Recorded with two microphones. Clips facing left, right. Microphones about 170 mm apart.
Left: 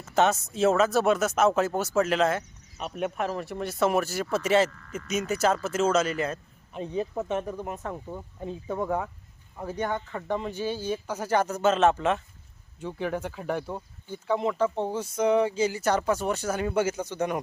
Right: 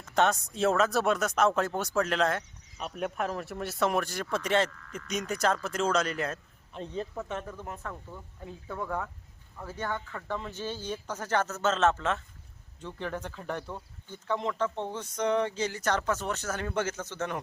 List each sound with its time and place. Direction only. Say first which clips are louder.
0.0 s speech: left 3 dB; 5° left (ahead or behind)
6.8 s speech: left 6 dB; 10° left (ahead or behind)